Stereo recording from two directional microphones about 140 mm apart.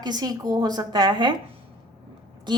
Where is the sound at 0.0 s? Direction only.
30° right (ahead or behind).